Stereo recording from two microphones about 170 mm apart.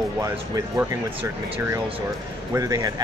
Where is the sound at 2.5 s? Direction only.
20° right (ahead or behind).